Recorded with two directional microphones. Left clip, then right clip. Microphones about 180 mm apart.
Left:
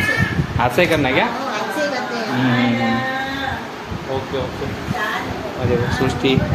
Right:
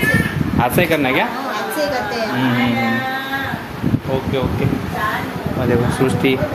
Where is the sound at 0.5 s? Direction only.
20° right (ahead or behind).